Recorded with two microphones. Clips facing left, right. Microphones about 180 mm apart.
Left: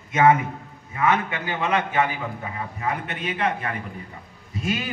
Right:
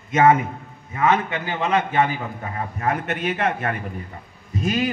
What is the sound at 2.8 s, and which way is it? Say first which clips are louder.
A man's voice: right 5 dB; 50° right (ahead or behind).